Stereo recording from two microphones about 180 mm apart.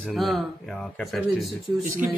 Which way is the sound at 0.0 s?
Centre (ahead or behind).